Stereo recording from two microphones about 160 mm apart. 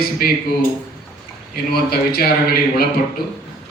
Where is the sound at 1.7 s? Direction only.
75° left (ahead or behind).